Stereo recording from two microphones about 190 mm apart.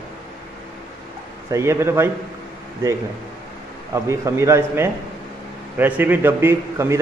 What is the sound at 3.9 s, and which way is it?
Speech, 15° right (ahead or behind).